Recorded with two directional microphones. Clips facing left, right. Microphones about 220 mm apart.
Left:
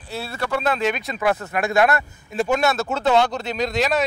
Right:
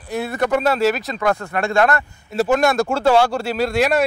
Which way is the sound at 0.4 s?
50° right (ahead or behind).